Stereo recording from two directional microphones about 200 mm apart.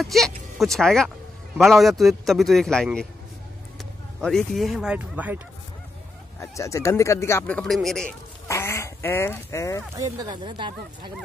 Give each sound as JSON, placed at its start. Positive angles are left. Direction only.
{"t": 0.0, "sound": "a man's voice", "side_deg": 0}
{"t": 4.2, "sound": "a man's voice", "side_deg": 0}
{"t": 6.4, "sound": "speech", "side_deg": 15}
{"t": 8.5, "sound": "speech", "side_deg": 15}
{"t": 9.9, "sound": "speech", "side_deg": -20}